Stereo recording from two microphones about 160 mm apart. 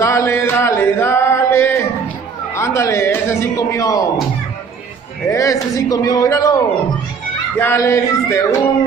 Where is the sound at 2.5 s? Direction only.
20° left (ahead or behind).